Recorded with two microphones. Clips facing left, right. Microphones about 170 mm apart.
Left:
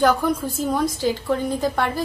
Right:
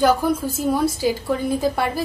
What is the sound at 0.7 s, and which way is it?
Speech, 10° right (ahead or behind).